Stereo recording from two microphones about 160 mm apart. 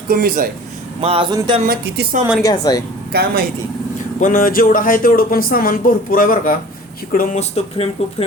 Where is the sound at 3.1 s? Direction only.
75° right (ahead or behind).